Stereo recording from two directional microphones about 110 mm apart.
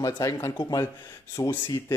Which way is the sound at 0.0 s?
35° left (ahead or behind).